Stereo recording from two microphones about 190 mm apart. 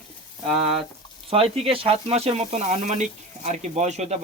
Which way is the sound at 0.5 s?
30° right (ahead or behind).